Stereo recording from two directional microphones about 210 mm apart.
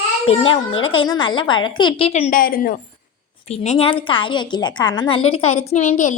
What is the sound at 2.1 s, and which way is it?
Speech, 35° left (ahead or behind).